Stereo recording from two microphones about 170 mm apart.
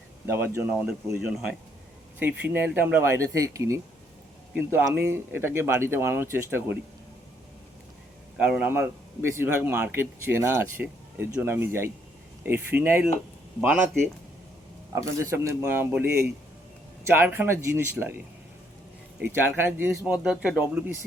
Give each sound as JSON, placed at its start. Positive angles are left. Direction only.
{"t": 0.3, "sound": "a man's voice", "side_deg": -15}
{"t": 8.4, "sound": "a man's voice", "side_deg": -5}
{"t": 14.9, "sound": "a man's voice", "side_deg": -15}
{"t": 17.1, "sound": "a man's voice", "side_deg": -10}
{"t": 19.2, "sound": "a man's voice", "side_deg": -10}